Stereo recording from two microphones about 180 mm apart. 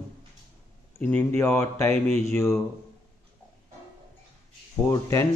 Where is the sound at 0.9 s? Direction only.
10° left (ahead or behind).